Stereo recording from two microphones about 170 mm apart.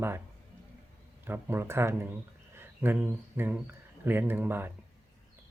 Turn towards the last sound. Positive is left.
turn(degrees=-10)  # may be behind; listen again after turning